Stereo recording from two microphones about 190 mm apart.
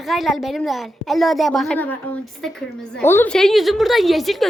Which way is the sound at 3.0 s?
10° left (ahead or behind).